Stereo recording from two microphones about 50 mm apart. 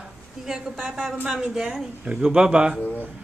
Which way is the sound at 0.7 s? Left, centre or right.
Centre.